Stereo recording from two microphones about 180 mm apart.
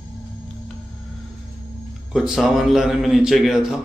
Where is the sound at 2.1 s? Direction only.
5° right (ahead or behind).